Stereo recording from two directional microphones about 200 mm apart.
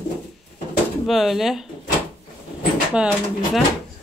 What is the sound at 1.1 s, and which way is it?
Speech, centre (ahead or behind).